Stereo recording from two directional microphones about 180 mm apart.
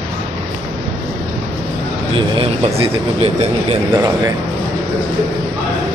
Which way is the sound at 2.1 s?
30° right (ahead or behind).